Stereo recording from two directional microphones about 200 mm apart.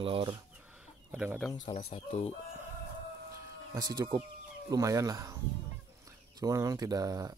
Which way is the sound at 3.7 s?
20° right (ahead or behind).